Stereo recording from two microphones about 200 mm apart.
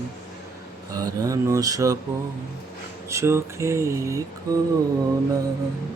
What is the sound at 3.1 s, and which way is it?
Mantra, 15° right (ahead or behind).